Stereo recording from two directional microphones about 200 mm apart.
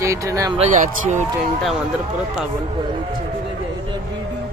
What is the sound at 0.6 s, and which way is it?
Speech, 40° right (ahead or behind).